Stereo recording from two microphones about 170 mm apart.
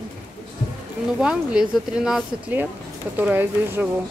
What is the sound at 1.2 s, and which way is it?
A woman's voice, 5° right (ahead or behind).